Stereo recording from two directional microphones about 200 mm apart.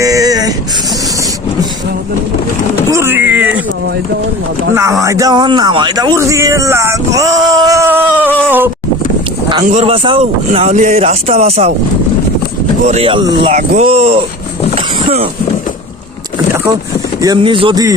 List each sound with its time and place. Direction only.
0.0 s a sound: 15° right (ahead or behind)
2.9 s vehicle: 10° right (ahead or behind)
4.7 s speech: 15° right (ahead or behind)
9.6 s speech: 30° right (ahead or behind)
12.8 s speech: 30° right (ahead or behind)
14.8 s a sound: 30° right (ahead or behind)
17.2 s speech: 20° right (ahead or behind)